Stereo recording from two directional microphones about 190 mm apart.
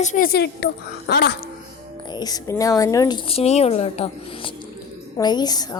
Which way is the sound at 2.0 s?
20° left (ahead or behind).